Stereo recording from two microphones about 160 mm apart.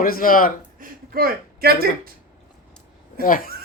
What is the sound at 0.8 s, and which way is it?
Speech, 70° right (ahead or behind).